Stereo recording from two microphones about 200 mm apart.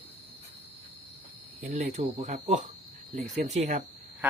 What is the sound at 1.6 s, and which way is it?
Speech, 35° right (ahead or behind).